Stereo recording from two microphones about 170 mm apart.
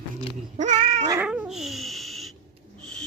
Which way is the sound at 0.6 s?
45° right (ahead or behind).